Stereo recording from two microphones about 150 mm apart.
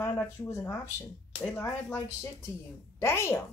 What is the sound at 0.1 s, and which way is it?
Speech, 15° left (ahead or behind).